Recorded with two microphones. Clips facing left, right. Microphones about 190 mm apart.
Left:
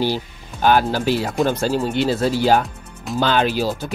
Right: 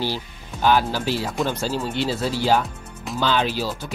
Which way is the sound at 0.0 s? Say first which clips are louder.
Left 5 dB; 50° left (ahead or behind).